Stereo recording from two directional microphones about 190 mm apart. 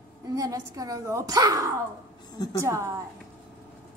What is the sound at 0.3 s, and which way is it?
A woman's voice, 15° right (ahead or behind).